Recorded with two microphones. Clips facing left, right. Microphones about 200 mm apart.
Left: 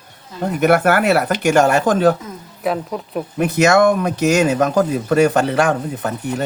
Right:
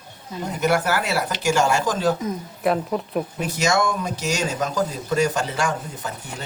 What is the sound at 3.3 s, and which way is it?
Speech, 60° left (ahead or behind).